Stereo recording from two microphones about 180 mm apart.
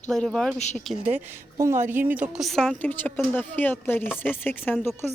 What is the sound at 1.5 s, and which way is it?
A woman's voice, 15° right (ahead or behind).